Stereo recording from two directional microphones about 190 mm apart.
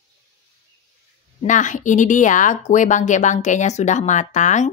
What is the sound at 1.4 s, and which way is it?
A woman's voice, 40° left (ahead or behind).